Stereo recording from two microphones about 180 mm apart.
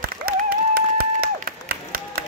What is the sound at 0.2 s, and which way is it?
Applause, 55° right (ahead or behind).